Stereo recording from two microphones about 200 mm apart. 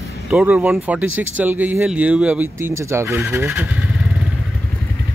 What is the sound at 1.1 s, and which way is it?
Speech, 75° right (ahead or behind).